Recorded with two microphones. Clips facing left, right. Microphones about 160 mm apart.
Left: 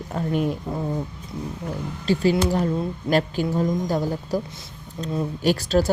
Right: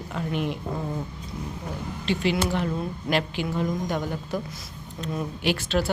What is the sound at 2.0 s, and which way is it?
Speech, 40° left (ahead or behind).